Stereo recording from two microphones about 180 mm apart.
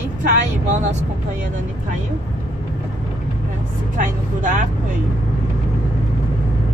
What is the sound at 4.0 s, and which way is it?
Speech, 45° right (ahead or behind).